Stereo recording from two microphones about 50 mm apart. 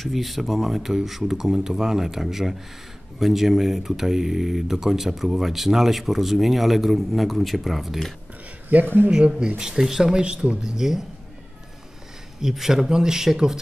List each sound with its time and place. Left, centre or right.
0.0 s speech: centre
8.7 s speech: right
9.6 s speech: centre
10.2 s speech: centre
12.4 s speech: centre